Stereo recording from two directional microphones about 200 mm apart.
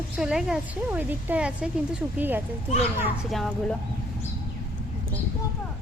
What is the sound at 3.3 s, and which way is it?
Speech, centre (ahead or behind).